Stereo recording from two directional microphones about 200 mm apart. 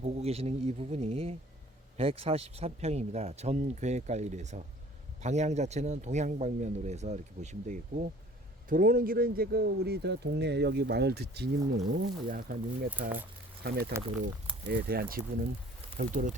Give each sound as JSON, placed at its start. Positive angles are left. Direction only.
{"t": 0.0, "sound": "speech", "side_deg": -30}
{"t": 12.9, "sound": "speech", "side_deg": -10}
{"t": 13.6, "sound": "speech", "side_deg": -50}
{"t": 14.0, "sound": "speech", "side_deg": -30}
{"t": 14.7, "sound": "speech", "side_deg": -50}